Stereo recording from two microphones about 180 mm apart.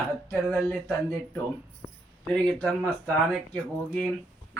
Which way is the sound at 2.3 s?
5° left (ahead or behind).